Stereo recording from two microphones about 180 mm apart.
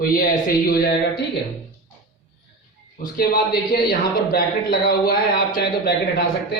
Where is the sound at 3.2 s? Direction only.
60° left (ahead or behind).